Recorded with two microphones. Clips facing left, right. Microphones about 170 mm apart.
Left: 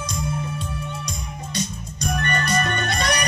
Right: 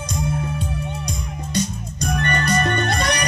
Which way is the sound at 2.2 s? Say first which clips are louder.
Right 3 dB; 35° right (ahead or behind).